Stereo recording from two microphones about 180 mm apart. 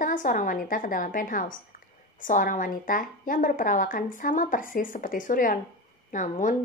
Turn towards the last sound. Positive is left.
turn(degrees=45)  # may be behind; listen again after turning